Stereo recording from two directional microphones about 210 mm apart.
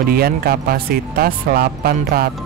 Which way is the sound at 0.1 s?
45° right (ahead or behind).